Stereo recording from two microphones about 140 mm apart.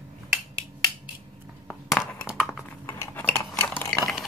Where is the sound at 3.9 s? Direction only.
5° left (ahead or behind).